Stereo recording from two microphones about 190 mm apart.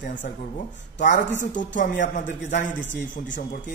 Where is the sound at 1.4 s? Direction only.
40° left (ahead or behind).